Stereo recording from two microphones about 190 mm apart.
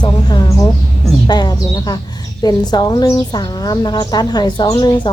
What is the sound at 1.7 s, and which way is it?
A woman's voice, 20° left (ahead or behind).